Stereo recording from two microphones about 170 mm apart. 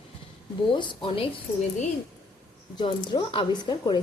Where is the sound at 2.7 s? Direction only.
25° left (ahead or behind).